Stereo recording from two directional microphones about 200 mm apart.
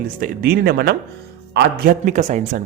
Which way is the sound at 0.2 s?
50° right (ahead or behind).